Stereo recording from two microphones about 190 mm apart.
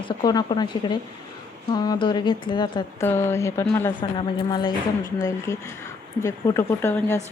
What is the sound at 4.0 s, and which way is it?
Speech, 25° left (ahead or behind).